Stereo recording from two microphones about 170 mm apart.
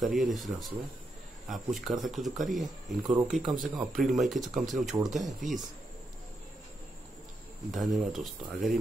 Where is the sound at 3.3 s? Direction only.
50° right (ahead or behind).